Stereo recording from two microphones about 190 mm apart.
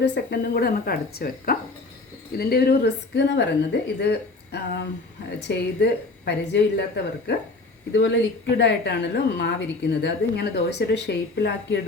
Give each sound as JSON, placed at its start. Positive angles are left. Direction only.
{"t": 0.0, "sound": "a woman's voice", "side_deg": 65}
{"t": 4.1, "sound": "a sound", "side_deg": 60}
{"t": 5.4, "sound": "a woman's voice", "side_deg": 60}